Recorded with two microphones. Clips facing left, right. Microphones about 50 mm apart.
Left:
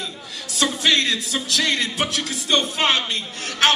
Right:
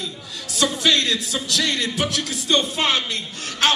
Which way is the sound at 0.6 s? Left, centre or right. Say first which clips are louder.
Even; left.